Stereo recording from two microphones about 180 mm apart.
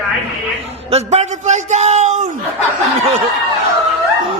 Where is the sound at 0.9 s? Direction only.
35° right (ahead or behind).